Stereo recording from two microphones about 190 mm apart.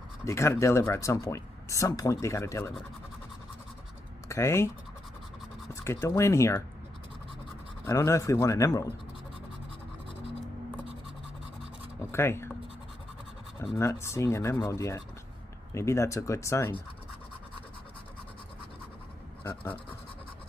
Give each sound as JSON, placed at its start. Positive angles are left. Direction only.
{"t": 0.2, "sound": "speech", "side_deg": 15}
{"t": 4.3, "sound": "speech", "side_deg": 15}
{"t": 5.7, "sound": "speech", "side_deg": 15}
{"t": 7.8, "sound": "speech", "side_deg": 15}
{"t": 12.1, "sound": "speech", "side_deg": 15}
{"t": 13.7, "sound": "speech", "side_deg": 15}